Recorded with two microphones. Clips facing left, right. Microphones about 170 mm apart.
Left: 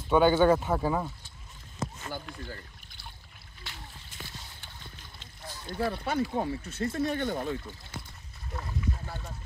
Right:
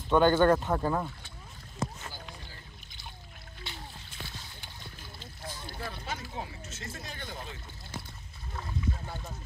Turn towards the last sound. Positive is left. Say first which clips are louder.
# left 12 dB
turn(degrees=50)  # may be behind; listen again after turning